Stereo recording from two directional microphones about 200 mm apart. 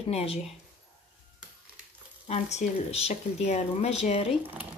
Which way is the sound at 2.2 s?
35° left (ahead or behind).